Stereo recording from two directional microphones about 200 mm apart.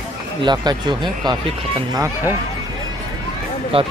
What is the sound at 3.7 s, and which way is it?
Speech, 25° right (ahead or behind).